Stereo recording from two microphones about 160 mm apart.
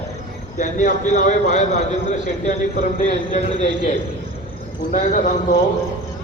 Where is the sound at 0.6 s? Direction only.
55° left (ahead or behind).